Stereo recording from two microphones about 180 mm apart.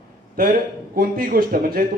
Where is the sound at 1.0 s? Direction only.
55° right (ahead or behind).